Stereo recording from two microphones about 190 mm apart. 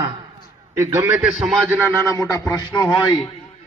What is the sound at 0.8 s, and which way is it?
A man's voice, 10° right (ahead or behind).